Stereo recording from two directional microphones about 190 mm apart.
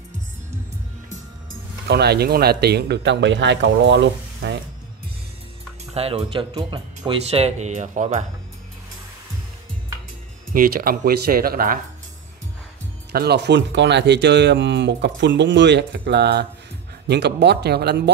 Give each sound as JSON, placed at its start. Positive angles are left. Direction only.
{"t": 1.9, "sound": "speech", "side_deg": -60}
{"t": 5.9, "sound": "speech", "side_deg": -30}
{"t": 10.5, "sound": "speech", "side_deg": -50}
{"t": 13.1, "sound": "speech", "side_deg": -60}